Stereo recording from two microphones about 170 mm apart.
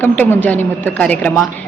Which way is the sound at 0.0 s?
10° left (ahead or behind).